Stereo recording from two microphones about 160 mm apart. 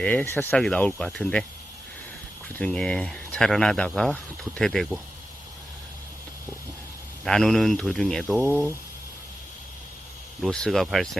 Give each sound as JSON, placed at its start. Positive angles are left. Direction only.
{"t": 0.0, "sound": "speech", "side_deg": 10}
{"t": 2.6, "sound": "speech", "side_deg": 5}
{"t": 7.3, "sound": "speech", "side_deg": 0}
{"t": 8.4, "sound": "speech", "side_deg": -10}
{"t": 10.4, "sound": "speech", "side_deg": 5}